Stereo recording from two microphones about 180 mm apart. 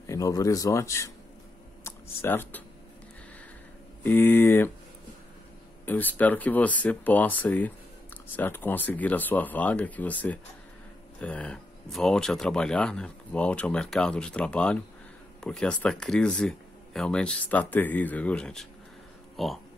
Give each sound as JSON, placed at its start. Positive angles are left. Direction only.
{"t": 0.0, "sound": "speech", "side_deg": 20}
{"t": 1.9, "sound": "computer keyboard", "side_deg": 10}
{"t": 4.0, "sound": "speech", "side_deg": 10}
{"t": 5.9, "sound": "speech", "side_deg": 10}